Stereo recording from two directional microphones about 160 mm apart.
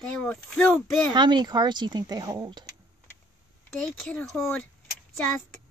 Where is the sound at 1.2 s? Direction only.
25° right (ahead or behind).